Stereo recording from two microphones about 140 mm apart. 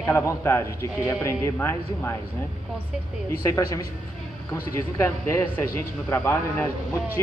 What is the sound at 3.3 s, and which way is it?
Speech, 25° left (ahead or behind).